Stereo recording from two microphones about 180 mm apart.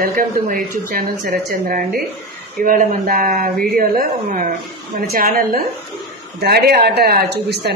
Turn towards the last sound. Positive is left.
turn(degrees=-60)  # may be behind; listen again after turning